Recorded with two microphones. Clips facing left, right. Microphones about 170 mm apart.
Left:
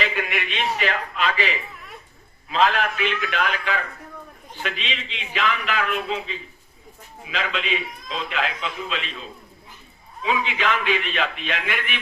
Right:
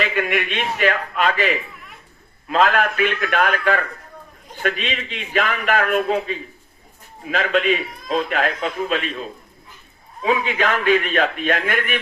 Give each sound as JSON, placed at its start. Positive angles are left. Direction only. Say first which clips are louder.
{"t": 0.0, "sound": "a man's voice", "louder": "right 5 dB", "side_deg": -50}
{"t": 10.2, "sound": "a man's voice", "louder": "right 4 dB", "side_deg": -45}